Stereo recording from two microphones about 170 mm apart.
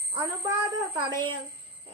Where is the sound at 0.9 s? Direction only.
25° right (ahead or behind).